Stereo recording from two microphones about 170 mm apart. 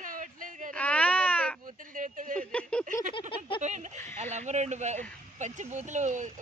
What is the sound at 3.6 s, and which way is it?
Speech, 45° right (ahead or behind).